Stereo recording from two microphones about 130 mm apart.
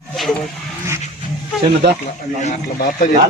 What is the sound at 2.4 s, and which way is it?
Speech, 75° left (ahead or behind).